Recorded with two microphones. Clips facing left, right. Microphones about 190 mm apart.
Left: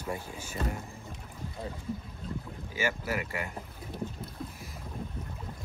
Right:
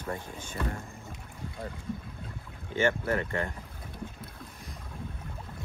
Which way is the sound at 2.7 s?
5° left (ahead or behind).